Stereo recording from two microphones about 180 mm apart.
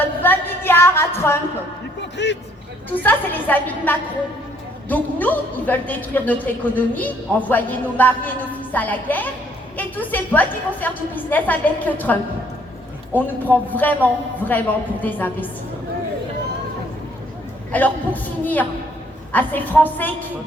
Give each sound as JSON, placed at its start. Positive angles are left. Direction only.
{"t": 0.0, "sound": "a sound", "side_deg": 10}
{"t": 2.1, "sound": "a man's voice", "side_deg": 75}
{"t": 2.9, "sound": "a woman's voice", "side_deg": 10}
{"t": 13.1, "sound": "a woman's voice", "side_deg": 10}
{"t": 17.7, "sound": "a woman's voice", "side_deg": 10}